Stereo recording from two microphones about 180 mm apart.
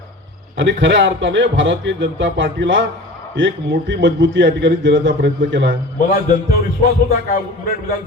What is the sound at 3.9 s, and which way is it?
A man's voice, 80° right.